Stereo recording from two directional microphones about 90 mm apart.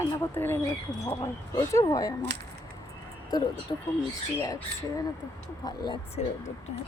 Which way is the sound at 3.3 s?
50° left (ahead or behind).